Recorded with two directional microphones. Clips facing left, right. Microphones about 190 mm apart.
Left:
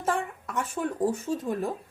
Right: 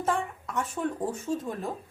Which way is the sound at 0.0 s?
5° left (ahead or behind).